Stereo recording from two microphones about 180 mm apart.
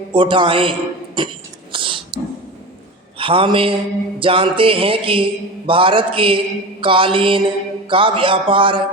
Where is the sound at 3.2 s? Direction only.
30° right (ahead or behind).